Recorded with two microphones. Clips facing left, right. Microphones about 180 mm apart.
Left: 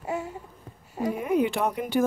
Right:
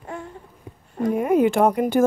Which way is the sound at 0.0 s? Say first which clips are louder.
Left 3 dB; 5° left (ahead or behind).